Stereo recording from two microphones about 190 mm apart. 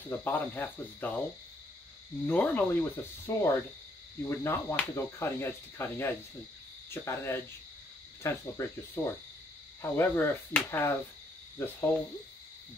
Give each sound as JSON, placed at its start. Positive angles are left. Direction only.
{"t": 0.1, "sound": "speech", "side_deg": 10}
{"t": 2.2, "sound": "speech", "side_deg": 10}